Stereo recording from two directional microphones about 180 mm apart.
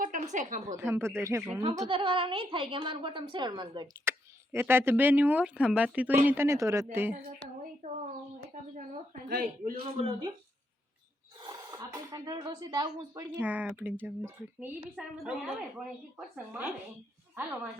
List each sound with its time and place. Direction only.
0.0 s a woman's voice: 45° right (ahead or behind)
0.9 s speech: 15° right (ahead or behind)
1.9 s a woman's voice: 30° right (ahead or behind)
4.1 s a sound: 15° right (ahead or behind)
4.5 s speech: 10° right (ahead or behind)
8.7 s a sound: 45° right (ahead or behind)
9.8 s a man's voice: 30° right (ahead or behind)
11.3 s speech: 20° right (ahead or behind)
13.3 s a woman's voice: 10° right (ahead or behind)